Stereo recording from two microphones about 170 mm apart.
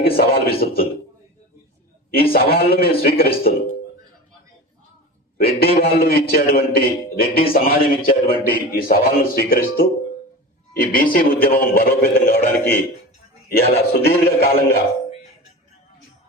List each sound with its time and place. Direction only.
0.0 s a man's voice: 60° left (ahead or behind)
2.1 s a man's voice: 60° left (ahead or behind)
5.4 s a man's voice: 60° left (ahead or behind)
13.5 s a man's voice: 65° left (ahead or behind)